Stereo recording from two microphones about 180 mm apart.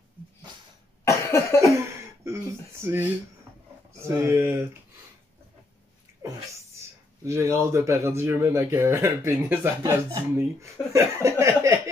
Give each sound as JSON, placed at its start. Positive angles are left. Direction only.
{"t": 1.0, "sound": "cough", "side_deg": 15}
{"t": 2.2, "sound": "speech", "side_deg": -15}
{"t": 7.2, "sound": "speech", "side_deg": -15}